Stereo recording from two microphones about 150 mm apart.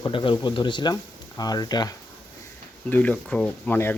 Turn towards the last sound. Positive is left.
turn(degrees=10)  # may be behind; listen again after turning